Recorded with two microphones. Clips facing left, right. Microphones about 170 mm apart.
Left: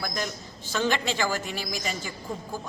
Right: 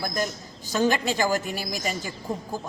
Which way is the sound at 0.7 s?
40° right (ahead or behind).